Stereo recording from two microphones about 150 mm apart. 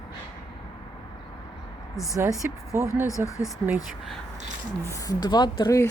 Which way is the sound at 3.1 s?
20° left (ahead or behind).